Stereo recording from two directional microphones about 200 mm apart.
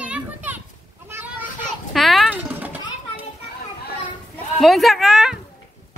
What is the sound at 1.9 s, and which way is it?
Pigeon, centre (ahead or behind).